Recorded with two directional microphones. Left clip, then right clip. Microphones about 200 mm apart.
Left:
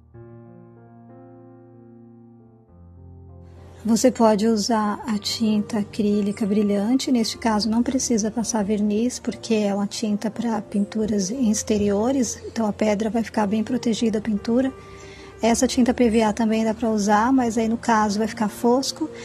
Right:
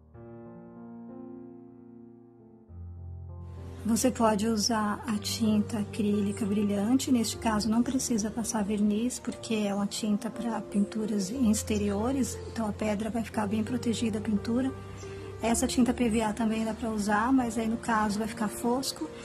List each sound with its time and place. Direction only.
3.8 s a woman's voice: 20° left (ahead or behind)